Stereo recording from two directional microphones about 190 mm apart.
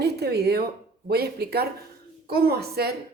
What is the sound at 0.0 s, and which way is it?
A woman's voice, 55° right (ahead or behind).